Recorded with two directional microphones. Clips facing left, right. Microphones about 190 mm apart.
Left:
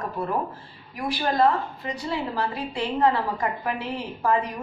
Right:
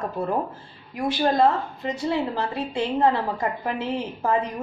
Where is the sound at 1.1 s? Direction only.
25° right (ahead or behind).